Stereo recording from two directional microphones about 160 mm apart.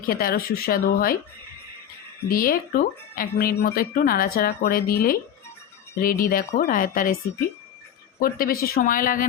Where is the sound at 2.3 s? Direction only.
65° left (ahead or behind).